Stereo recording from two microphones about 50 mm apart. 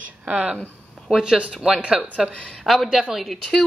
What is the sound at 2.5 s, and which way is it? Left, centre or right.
Speech, centre.